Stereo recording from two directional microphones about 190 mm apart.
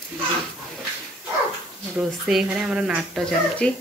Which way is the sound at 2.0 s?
5° right (ahead or behind).